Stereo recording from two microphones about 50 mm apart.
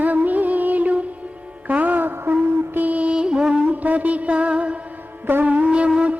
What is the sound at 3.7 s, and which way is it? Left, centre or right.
Mantra, right.